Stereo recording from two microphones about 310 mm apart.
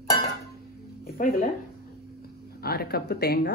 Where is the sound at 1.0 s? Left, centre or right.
Left.